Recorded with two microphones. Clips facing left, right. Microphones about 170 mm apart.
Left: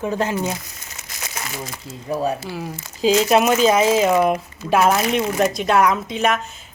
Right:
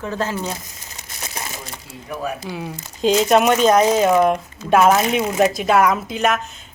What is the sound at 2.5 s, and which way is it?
Speech, centre (ahead or behind).